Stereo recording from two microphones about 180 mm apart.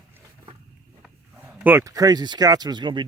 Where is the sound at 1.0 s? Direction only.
10° right (ahead or behind).